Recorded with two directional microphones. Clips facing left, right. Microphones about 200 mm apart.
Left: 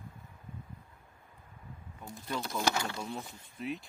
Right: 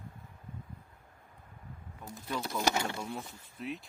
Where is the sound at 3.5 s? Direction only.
Centre (ahead or behind).